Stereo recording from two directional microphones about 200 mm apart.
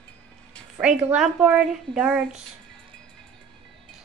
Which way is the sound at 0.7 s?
5° right (ahead or behind).